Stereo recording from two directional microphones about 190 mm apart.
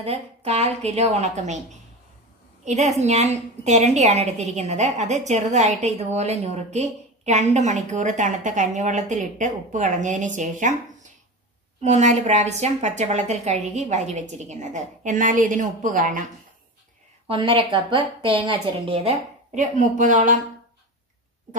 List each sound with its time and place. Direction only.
0.0 s a woman's voice: 35° right (ahead or behind)
17.3 s a woman's voice: 25° right (ahead or behind)